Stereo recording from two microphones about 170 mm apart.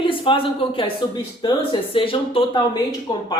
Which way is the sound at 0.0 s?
30° left (ahead or behind).